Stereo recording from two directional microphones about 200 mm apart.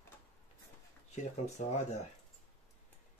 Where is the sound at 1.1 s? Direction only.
35° left (ahead or behind).